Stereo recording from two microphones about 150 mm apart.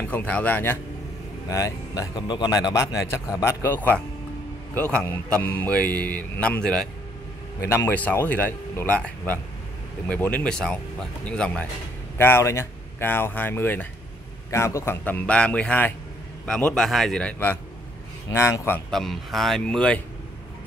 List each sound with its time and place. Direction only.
0.0 s speech: 10° left (ahead or behind)
7.6 s a man's voice: 15° left (ahead or behind)
18.9 s a man's voice: centre (ahead or behind)